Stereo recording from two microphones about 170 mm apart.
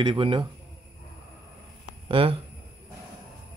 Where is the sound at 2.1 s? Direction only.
30° right (ahead or behind).